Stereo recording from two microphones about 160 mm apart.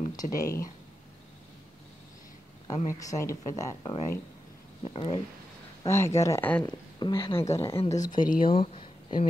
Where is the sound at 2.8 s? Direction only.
20° left (ahead or behind).